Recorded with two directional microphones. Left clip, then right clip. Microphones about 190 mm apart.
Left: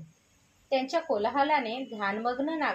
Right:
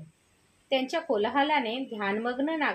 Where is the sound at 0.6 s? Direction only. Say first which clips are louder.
Even; 35° right (ahead or behind).